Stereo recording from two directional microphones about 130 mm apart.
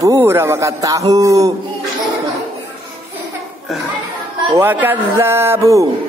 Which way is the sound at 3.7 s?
Centre (ahead or behind).